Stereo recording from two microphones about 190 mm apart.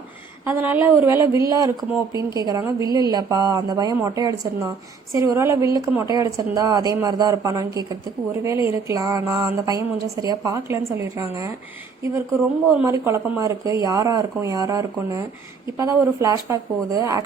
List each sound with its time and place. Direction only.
0.4 s a woman's voice: 10° right (ahead or behind)
12.8 s a woman's voice: 15° right (ahead or behind)